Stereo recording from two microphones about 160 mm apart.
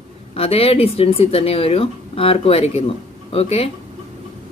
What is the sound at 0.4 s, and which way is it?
Speech, 35° left (ahead or behind).